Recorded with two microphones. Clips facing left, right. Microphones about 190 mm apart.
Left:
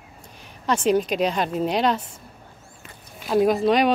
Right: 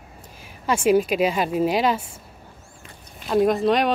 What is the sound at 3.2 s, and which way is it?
Speech, centre (ahead or behind).